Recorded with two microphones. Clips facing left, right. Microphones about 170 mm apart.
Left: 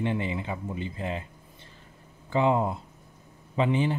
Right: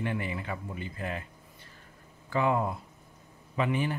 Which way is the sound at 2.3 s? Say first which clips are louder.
Left 3 dB; 25° left (ahead or behind).